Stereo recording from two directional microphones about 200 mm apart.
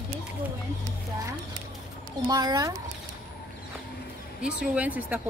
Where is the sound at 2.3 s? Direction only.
20° right (ahead or behind).